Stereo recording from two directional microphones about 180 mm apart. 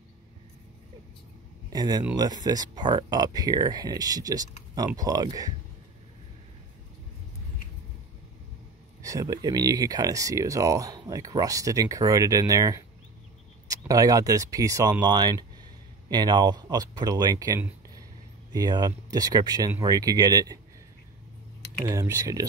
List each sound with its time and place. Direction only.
1.7 s speech: 20° right (ahead or behind)
9.0 s speech: 20° right (ahead or behind)
21.8 s speech: 15° right (ahead or behind)